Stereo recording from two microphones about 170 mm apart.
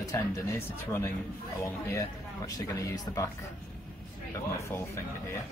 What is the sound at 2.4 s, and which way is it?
Speech, 20° left (ahead or behind).